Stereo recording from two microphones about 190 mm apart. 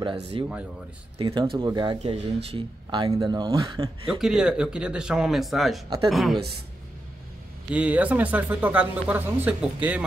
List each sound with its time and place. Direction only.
0.3 s speech: 30° right (ahead or behind)
4.2 s speech: 5° right (ahead or behind)
7.7 s speech: 5° right (ahead or behind)